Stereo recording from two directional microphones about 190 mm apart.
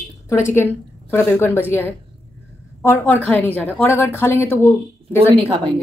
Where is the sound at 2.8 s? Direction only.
10° left (ahead or behind).